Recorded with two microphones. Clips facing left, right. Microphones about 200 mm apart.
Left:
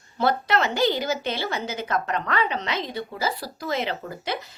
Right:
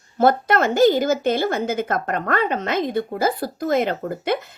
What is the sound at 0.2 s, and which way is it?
A woman's voice, 50° right (ahead or behind).